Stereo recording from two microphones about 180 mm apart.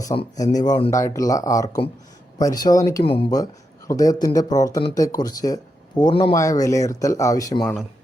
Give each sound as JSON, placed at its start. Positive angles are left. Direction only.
{"t": 0.1, "sound": "speech", "side_deg": 25}
{"t": 3.0, "sound": "speech", "side_deg": 30}